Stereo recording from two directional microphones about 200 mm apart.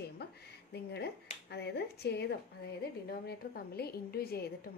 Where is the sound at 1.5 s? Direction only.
55° left (ahead or behind).